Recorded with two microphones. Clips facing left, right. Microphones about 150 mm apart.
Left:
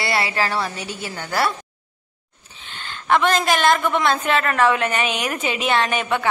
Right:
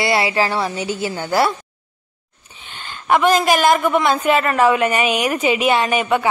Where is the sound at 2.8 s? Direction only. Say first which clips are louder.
Right 2 dB; 10° right (ahead or behind).